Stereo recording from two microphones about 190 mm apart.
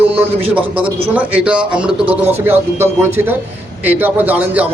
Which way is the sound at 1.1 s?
10° right (ahead or behind).